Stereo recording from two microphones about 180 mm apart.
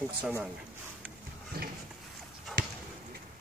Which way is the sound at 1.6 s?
60° right (ahead or behind).